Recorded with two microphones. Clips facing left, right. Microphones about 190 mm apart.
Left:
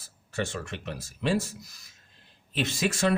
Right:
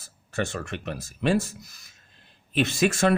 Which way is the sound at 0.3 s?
55° right (ahead or behind).